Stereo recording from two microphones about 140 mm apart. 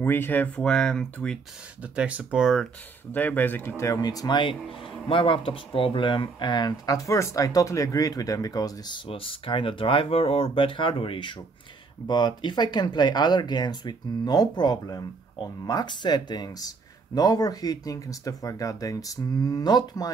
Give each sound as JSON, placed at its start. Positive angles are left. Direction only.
{"t": 0.0, "sound": "speech", "side_deg": 15}
{"t": 1.8, "sound": "speech", "side_deg": -10}
{"t": 3.1, "sound": "speech", "side_deg": 15}
{"t": 4.6, "sound": "speech", "side_deg": 0}
{"t": 5.0, "sound": "speech", "side_deg": 40}